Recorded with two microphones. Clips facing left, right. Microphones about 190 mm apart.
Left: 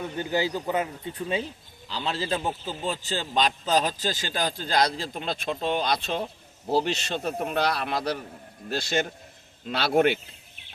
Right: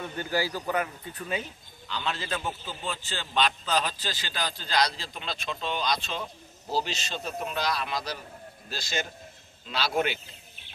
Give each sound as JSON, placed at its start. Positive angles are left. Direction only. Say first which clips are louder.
{"t": 0.0, "sound": "speech", "louder": "left 3 dB", "side_deg": 20}